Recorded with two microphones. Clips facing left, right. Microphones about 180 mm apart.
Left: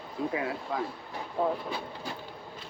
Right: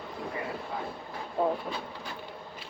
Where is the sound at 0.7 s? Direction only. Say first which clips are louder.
Left 7 dB; 90° left.